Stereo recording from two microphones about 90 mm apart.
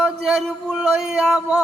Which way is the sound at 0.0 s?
5° right (ahead or behind).